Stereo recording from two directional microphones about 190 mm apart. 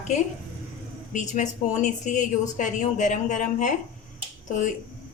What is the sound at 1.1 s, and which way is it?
A woman's voice, 40° left (ahead or behind).